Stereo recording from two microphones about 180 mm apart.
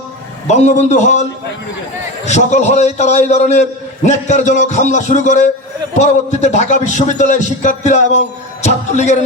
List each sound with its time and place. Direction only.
0.4 s a man's voice: 40° left (ahead or behind)
2.2 s a man's voice: 40° left (ahead or behind)